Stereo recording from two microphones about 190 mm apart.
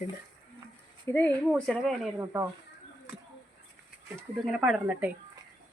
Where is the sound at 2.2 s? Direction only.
15° right (ahead or behind).